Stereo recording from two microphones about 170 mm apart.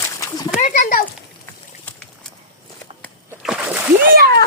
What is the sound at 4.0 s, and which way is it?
Splash, 60° right (ahead or behind).